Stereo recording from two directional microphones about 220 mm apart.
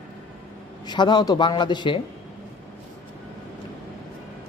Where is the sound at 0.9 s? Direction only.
20° left (ahead or behind).